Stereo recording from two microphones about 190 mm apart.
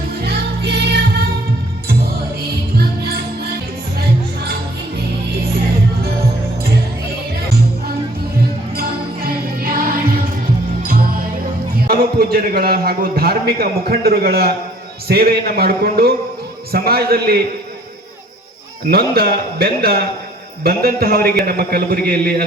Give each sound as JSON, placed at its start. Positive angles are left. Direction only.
{"t": 0.2, "sound": "music", "side_deg": -55}
{"t": 8.7, "sound": "music", "side_deg": -50}
{"t": 11.9, "sound": "a man's voice", "side_deg": -55}
{"t": 18.9, "sound": "a man's voice", "side_deg": -55}